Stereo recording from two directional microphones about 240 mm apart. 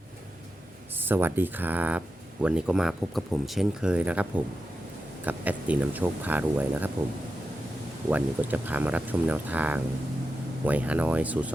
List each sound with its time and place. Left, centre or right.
0.9 s speech: centre
8.1 s speech: centre